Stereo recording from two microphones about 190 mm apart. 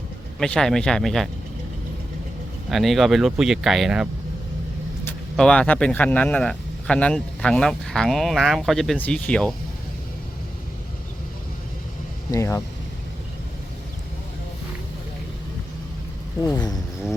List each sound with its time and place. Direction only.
0.3 s speech: 5° left (ahead or behind)
2.6 s speech: centre (ahead or behind)
5.4 s speech: 5° left (ahead or behind)
12.3 s speech: 15° left (ahead or behind)
16.4 s speech: 20° left (ahead or behind)